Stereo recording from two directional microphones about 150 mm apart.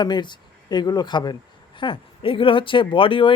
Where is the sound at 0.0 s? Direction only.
30° left (ahead or behind).